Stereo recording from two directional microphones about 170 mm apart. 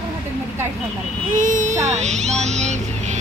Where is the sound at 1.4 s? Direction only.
45° right (ahead or behind).